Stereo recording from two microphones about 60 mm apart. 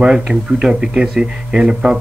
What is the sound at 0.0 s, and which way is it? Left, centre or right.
Speech, centre.